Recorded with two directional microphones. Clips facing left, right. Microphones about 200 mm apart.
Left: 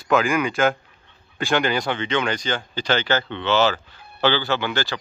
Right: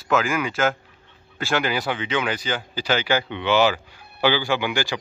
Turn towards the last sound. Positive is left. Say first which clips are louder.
# right 1 dB
turn(degrees=-15)  # may be behind; listen again after turning